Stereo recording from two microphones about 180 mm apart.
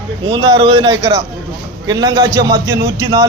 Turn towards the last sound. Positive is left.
turn(degrees=-20)  # may be behind; listen again after turning